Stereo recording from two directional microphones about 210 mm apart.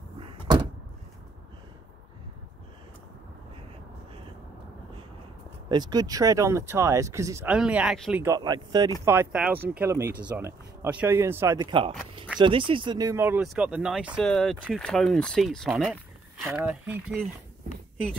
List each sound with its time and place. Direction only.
0.2 s door: 25° right (ahead or behind)
5.7 s speech: 20° right (ahead or behind); by 8.3 s 5° right (ahead or behind)
8.3 s speech: 20° right (ahead or behind)